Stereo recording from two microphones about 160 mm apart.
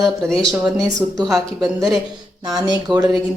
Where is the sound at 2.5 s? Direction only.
25° right (ahead or behind).